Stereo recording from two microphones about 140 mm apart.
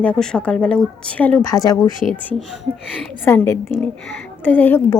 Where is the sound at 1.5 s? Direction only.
25° left (ahead or behind).